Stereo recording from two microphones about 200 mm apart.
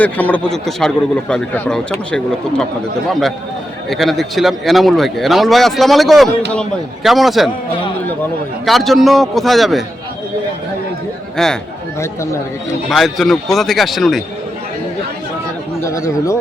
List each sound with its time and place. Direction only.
0.0 s speech: 5° left (ahead or behind)
8.6 s speech: centre (ahead or behind)
11.4 s speech: centre (ahead or behind)
11.9 s speech: 15° left (ahead or behind)
12.9 s speech: centre (ahead or behind)
15.8 s speech: 15° left (ahead or behind)